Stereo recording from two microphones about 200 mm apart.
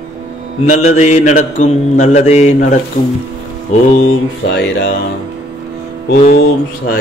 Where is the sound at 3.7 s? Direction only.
35° left (ahead or behind).